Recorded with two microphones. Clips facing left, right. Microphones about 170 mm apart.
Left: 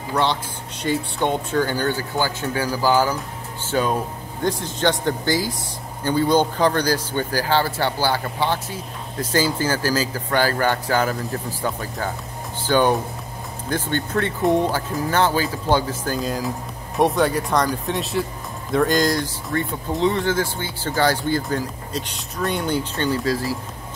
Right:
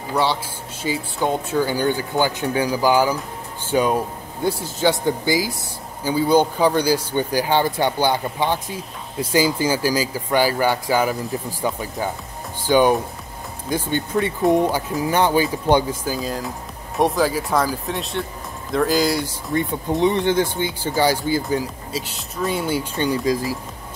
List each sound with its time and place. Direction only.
0.1 s speech: 10° right (ahead or behind)
19.5 s speech: 20° right (ahead or behind)